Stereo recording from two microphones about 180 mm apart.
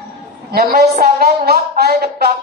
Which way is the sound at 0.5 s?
60° right (ahead or behind).